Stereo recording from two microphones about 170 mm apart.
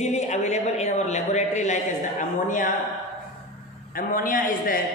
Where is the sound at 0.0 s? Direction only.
40° left (ahead or behind).